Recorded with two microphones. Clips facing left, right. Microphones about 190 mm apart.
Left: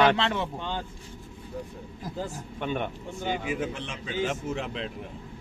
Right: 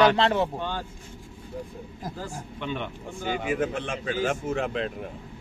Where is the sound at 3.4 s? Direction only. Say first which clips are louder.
Right 4 dB; 55° right (ahead or behind).